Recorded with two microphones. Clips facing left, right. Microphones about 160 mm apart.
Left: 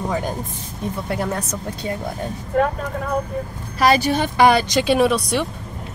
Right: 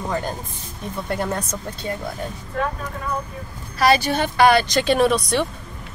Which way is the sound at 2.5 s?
50° left (ahead or behind).